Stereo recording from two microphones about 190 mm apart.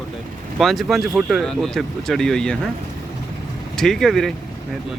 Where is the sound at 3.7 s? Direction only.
Centre (ahead or behind).